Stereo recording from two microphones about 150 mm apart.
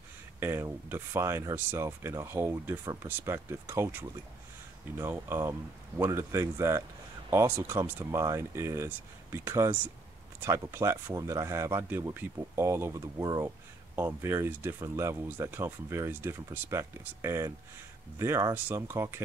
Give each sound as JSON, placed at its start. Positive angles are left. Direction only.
{"t": 0.4, "sound": "speech", "side_deg": -15}